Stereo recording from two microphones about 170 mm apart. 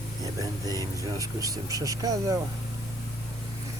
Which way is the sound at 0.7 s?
20° right (ahead or behind).